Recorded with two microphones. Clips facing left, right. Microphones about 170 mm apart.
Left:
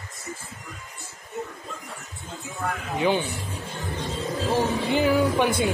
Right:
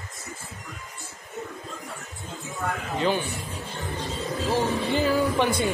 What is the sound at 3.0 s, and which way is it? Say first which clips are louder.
Speech: left 2 dB; 15° left (ahead or behind).